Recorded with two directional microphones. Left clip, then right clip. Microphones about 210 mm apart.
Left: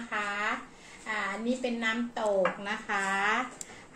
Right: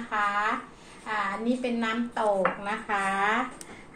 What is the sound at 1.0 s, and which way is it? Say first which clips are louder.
Child singing: right 3 dB; centre (ahead or behind).